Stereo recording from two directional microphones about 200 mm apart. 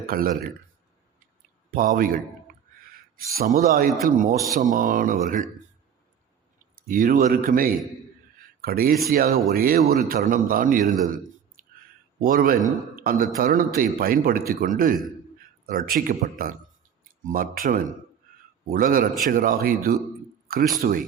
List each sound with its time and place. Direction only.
0.0 s speech: 45° right (ahead or behind)
1.7 s speech: 45° right (ahead or behind)
6.8 s speech: 45° right (ahead or behind)
17.2 s speech: 45° right (ahead or behind)